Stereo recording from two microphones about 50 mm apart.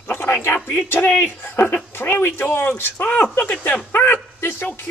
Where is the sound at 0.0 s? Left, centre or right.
Left.